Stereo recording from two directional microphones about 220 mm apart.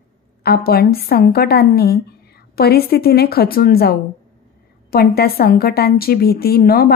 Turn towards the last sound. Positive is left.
turn(degrees=45)  # may be behind; listen again after turning